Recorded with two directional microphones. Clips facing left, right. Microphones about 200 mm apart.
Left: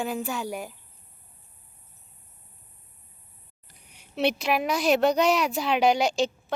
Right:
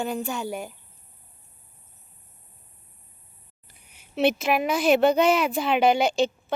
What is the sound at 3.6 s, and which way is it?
A woman's voice, 5° right (ahead or behind).